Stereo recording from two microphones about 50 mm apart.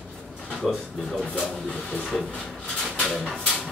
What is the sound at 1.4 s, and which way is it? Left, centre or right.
Speech, centre.